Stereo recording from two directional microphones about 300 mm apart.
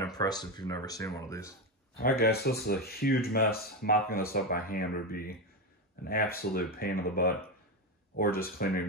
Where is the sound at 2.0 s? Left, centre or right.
Left.